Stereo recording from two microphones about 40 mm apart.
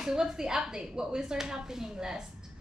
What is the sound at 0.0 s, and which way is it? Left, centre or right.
Speech, centre.